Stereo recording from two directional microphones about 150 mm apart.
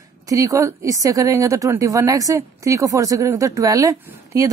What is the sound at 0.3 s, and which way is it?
Speech, 20° right (ahead or behind).